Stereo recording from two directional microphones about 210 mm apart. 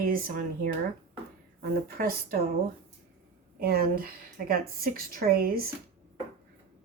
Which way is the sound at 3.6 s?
45° right (ahead or behind).